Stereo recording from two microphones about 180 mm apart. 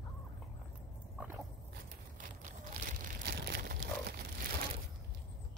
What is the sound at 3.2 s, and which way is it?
Crumpling, 60° right (ahead or behind).